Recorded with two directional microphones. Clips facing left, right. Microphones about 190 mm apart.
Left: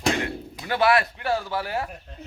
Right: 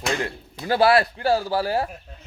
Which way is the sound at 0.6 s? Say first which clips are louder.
Right 4 dB; 30° right (ahead or behind).